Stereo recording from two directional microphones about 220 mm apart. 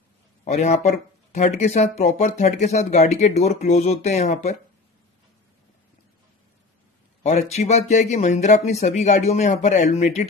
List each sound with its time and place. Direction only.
0.5 s speech: 30° left (ahead or behind)
7.5 s speech: 30° left (ahead or behind)